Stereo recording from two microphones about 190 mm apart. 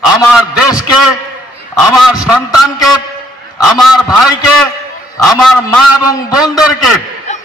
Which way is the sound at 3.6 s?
Centre (ahead or behind).